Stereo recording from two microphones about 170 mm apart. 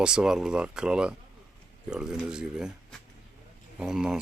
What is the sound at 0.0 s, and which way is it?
Speech, 5° right (ahead or behind).